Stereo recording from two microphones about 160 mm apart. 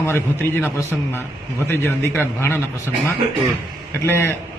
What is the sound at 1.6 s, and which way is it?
Speech, 15° left (ahead or behind).